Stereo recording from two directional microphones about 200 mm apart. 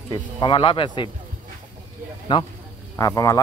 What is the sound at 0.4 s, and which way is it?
Speech, 25° left (ahead or behind).